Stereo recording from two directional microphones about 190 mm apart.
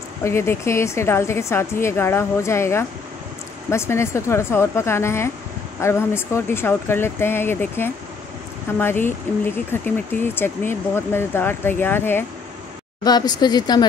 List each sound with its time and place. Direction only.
0.2 s a woman's voice: 15° left (ahead or behind)